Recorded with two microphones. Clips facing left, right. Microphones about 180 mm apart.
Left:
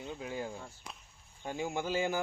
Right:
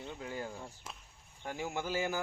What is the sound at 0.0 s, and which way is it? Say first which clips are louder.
A man's voice: left 2 dB; 15° left (ahead or behind).